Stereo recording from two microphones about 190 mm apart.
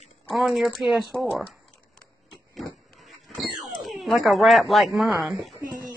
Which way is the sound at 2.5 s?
Centre (ahead or behind).